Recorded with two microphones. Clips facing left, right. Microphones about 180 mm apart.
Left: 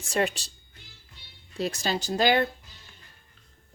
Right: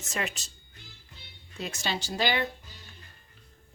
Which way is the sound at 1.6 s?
40° left (ahead or behind).